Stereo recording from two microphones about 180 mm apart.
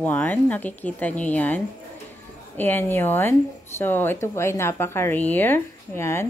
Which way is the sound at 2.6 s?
10° left (ahead or behind).